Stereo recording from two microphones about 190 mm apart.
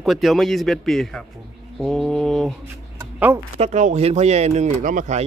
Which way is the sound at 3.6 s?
35° right (ahead or behind).